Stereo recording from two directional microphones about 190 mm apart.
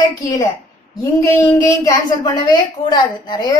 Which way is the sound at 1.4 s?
15° left (ahead or behind).